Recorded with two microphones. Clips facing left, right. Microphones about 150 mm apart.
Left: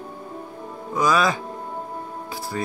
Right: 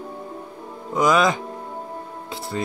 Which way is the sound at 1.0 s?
20° right (ahead or behind).